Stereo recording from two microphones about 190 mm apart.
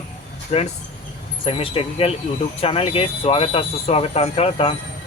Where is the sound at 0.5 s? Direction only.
35° left (ahead or behind).